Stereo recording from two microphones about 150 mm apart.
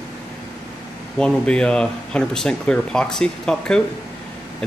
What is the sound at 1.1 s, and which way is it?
Speech, 5° left (ahead or behind).